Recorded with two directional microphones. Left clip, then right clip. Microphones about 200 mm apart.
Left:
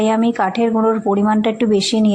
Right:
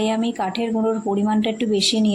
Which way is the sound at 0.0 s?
20° left (ahead or behind).